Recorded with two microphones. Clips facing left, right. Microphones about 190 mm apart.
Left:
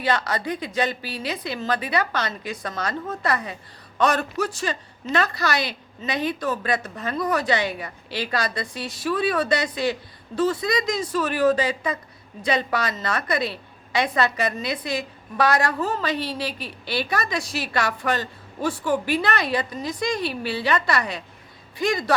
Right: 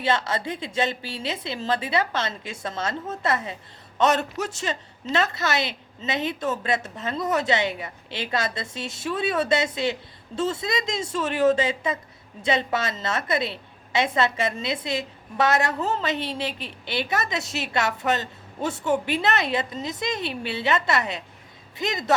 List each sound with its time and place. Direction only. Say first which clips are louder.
0.0 s a woman's voice: left 1 dB; 25° right (ahead or behind)